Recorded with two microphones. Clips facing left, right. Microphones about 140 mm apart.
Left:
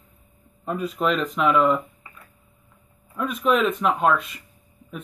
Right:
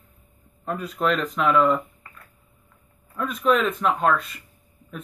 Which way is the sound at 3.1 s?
5° left (ahead or behind).